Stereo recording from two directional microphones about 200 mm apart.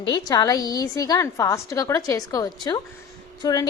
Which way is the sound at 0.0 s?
20° left (ahead or behind).